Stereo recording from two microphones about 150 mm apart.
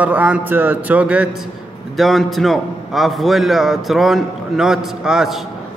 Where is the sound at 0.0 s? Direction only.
10° right (ahead or behind).